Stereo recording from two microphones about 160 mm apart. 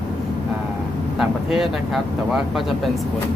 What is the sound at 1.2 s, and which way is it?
Speech, centre (ahead or behind).